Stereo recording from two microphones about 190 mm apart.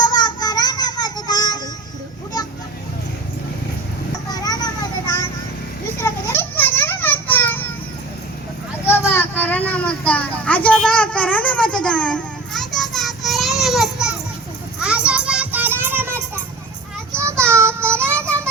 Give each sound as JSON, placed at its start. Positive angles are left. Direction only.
{"t": 0.0, "sound": "child singing", "side_deg": 20}
{"t": 4.3, "sound": "vehicle", "side_deg": 20}
{"t": 6.0, "sound": "children playing", "side_deg": 15}
{"t": 8.9, "sound": "a sound", "side_deg": 10}
{"t": 14.8, "sound": "children playing", "side_deg": -5}
{"t": 17.4, "sound": "child singing", "side_deg": -15}